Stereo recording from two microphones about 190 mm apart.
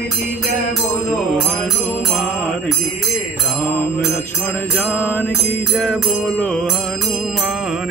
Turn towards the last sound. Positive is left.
turn(degrees=5)  # may be behind; listen again after turning